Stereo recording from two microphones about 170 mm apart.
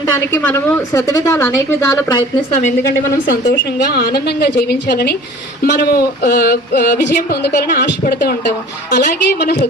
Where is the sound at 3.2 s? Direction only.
55° left (ahead or behind).